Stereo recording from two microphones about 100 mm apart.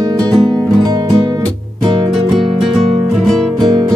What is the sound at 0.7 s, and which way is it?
Music, 45° right (ahead or behind).